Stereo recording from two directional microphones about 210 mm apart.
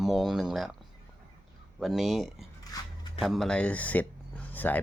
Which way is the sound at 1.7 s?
Centre (ahead or behind).